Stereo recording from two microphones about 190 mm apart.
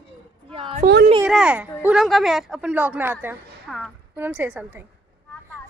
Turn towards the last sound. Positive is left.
turn(degrees=-10)  # may be behind; listen again after turning